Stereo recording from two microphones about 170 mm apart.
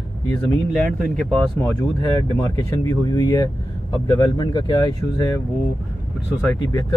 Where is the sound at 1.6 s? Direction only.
20° left (ahead or behind).